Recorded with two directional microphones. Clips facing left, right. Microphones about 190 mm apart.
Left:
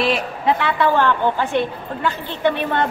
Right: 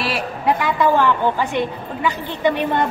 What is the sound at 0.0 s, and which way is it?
A woman's voice, 10° right (ahead or behind).